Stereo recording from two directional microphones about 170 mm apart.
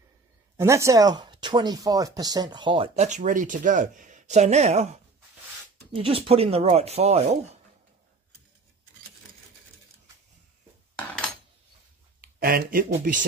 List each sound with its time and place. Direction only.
0.6 s speech: 15° right (ahead or behind); by 5.0 s 40° right (ahead or behind)
6.0 s speech: 35° right (ahead or behind)
12.2 s speech: 60° right (ahead or behind)